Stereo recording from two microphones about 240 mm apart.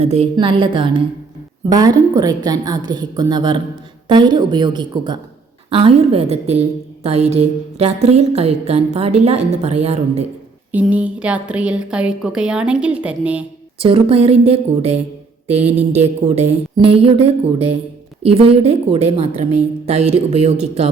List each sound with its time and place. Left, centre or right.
0.0 s a woman's voice: right
10.7 s a woman's voice: centre
13.7 s a woman's voice: right